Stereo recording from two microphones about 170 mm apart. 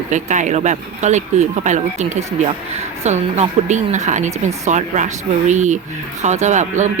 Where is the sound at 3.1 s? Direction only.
45° right (ahead or behind).